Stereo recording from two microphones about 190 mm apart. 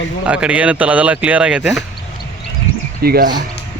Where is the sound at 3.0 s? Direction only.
55° right (ahead or behind).